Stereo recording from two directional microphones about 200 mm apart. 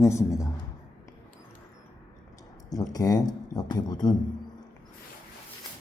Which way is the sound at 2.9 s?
20° left (ahead or behind).